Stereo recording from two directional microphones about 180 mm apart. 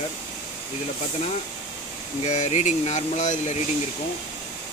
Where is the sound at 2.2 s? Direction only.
40° left (ahead or behind).